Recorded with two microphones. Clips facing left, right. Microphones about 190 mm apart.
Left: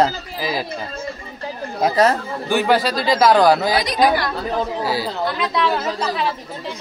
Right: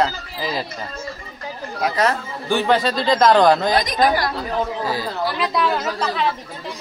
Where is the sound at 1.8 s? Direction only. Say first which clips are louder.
Left 4 dB; 30° left (ahead or behind).